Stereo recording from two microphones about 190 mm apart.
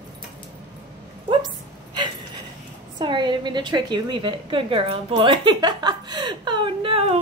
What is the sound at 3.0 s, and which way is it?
A woman's voice, 25° right (ahead or behind).